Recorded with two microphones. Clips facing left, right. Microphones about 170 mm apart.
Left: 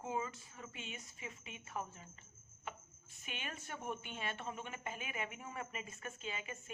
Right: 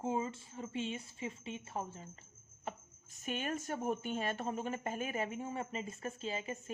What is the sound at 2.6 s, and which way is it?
Speech, 40° right (ahead or behind).